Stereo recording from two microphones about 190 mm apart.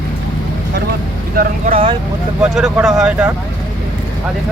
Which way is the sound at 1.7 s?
30° right (ahead or behind).